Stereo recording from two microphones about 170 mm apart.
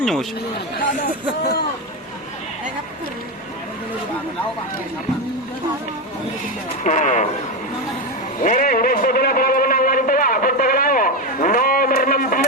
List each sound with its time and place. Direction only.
0.0 s speech: centre (ahead or behind)
6.8 s speech: 45° left (ahead or behind)
8.4 s a sound: 55° left (ahead or behind)